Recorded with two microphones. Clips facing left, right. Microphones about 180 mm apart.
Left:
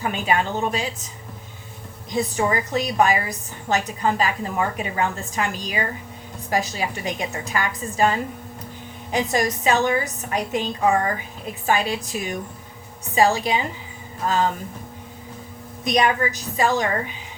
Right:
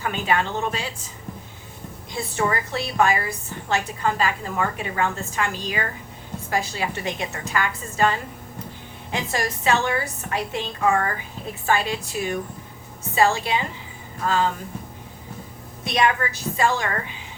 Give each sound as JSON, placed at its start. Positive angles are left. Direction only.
{"t": 0.0, "sound": "a woman's voice", "side_deg": 15}
{"t": 2.1, "sound": "a woman's voice", "side_deg": 15}
{"t": 9.2, "sound": "a woman's voice", "side_deg": 20}
{"t": 15.8, "sound": "a woman's voice", "side_deg": 15}